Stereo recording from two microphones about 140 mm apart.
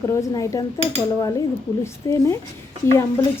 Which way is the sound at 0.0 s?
25° left (ahead or behind).